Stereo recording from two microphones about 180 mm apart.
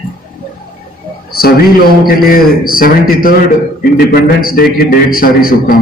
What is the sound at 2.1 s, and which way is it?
A man's voice, 55° left (ahead or behind).